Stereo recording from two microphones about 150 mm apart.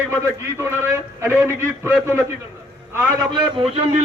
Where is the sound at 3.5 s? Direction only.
40° right (ahead or behind).